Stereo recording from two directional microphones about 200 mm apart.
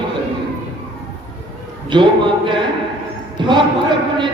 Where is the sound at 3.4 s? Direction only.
25° right (ahead or behind).